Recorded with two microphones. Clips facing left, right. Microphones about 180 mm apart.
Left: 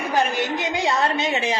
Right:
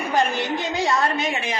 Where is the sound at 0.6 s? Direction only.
20° left (ahead or behind).